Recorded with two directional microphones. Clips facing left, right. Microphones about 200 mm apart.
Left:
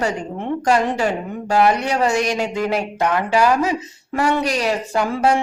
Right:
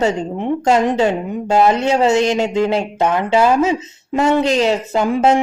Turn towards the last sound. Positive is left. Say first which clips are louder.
# right 4 dB
turn(degrees=-20)  # may be behind; listen again after turning